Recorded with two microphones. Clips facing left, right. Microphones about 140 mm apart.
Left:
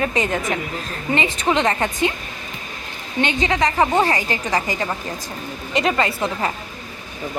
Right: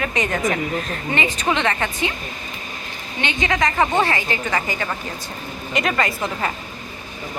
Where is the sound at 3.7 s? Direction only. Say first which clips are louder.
Left 2 dB; 10° left (ahead or behind).